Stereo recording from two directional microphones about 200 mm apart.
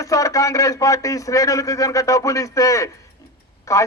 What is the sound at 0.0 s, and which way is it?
A man's voice, 15° left (ahead or behind).